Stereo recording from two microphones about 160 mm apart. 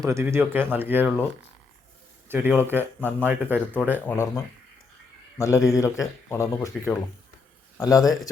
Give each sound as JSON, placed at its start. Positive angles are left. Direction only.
{"t": 0.0, "sound": "speech", "side_deg": -15}
{"t": 2.3, "sound": "speech", "side_deg": -10}
{"t": 4.0, "sound": "speech", "side_deg": 15}